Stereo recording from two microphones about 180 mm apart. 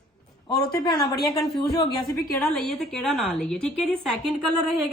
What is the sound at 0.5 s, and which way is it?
Speech, 20° left (ahead or behind).